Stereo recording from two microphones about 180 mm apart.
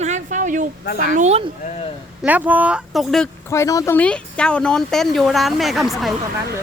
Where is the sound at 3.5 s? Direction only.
15° left (ahead or behind); by 6.1 s centre (ahead or behind).